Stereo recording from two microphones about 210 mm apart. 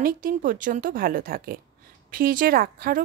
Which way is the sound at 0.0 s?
40° right (ahead or behind).